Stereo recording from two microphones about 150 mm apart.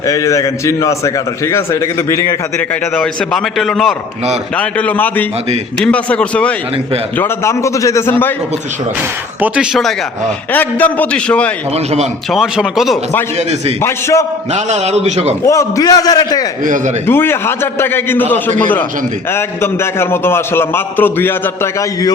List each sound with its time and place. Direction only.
0.0 s a man's voice: 20° left (ahead or behind)
2.9 s a man's voice: 5° left (ahead or behind)
9.4 s a man's voice: 5° right (ahead or behind)
10.5 s a man's voice: 10° left (ahead or behind)
11.7 s a man's voice: 45° right (ahead or behind)
12.3 s a man's voice: centre (ahead or behind)
13.8 s a man's voice: 20° left (ahead or behind)
14.5 s a man's voice: 50° right (ahead or behind)
15.4 s a man's voice: 20° left (ahead or behind)
16.6 s a man's voice: 60° right (ahead or behind)
17.1 s a man's voice: 15° left (ahead or behind)